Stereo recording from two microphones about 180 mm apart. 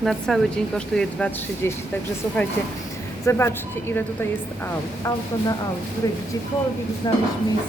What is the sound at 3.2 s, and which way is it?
Speech, 15° left (ahead or behind).